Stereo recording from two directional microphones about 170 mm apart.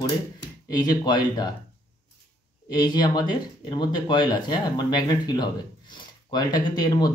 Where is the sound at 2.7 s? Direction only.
25° left (ahead or behind).